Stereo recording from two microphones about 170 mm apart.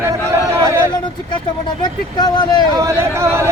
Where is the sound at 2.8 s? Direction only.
15° right (ahead or behind).